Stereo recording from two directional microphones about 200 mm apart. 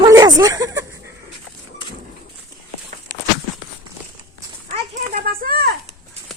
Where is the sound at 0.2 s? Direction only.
20° right (ahead or behind).